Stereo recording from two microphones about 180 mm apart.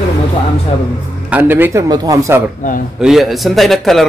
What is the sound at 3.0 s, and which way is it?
Speech, centre (ahead or behind).